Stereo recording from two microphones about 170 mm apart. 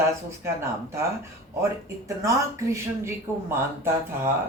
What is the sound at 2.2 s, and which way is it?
Speech, 20° right (ahead or behind).